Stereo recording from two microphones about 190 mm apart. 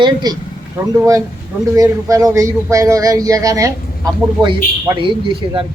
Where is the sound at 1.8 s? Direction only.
15° right (ahead or behind).